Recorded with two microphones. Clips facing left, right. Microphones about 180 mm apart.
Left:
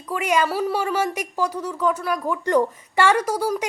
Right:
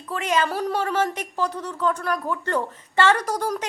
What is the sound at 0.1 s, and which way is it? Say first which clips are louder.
A woman's voice: left 2 dB; 10° left (ahead or behind).